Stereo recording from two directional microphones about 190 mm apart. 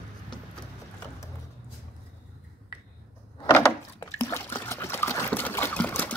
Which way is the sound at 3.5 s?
15° left (ahead or behind).